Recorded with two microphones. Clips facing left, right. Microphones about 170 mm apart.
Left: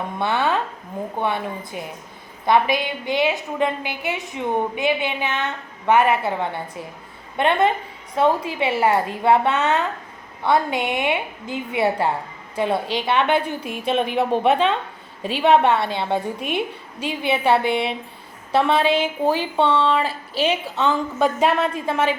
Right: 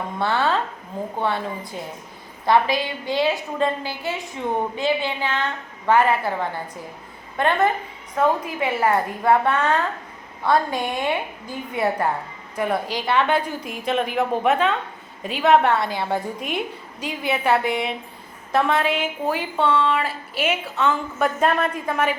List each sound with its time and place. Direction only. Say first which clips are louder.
0.2 s a woman's voice: even; 15° left (ahead or behind)